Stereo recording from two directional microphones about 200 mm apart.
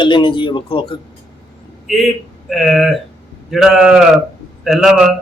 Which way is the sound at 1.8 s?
Centre (ahead or behind).